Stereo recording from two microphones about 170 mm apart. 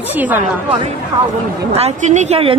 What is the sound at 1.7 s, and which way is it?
Speech, 40° right (ahead or behind).